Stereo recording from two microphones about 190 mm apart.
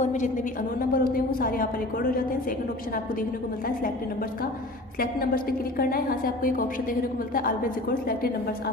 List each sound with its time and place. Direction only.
0.0 s a woman's voice: 40° left (ahead or behind)
4.9 s a woman's voice: 50° left (ahead or behind)